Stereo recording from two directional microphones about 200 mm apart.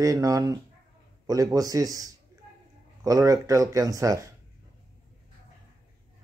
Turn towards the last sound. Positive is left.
turn(degrees=-15)  # may be behind; listen again after turning